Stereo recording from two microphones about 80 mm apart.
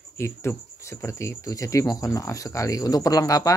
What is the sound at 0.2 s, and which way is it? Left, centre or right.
Speech, left.